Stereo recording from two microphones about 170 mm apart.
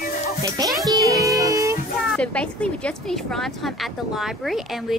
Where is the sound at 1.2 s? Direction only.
20° right (ahead or behind).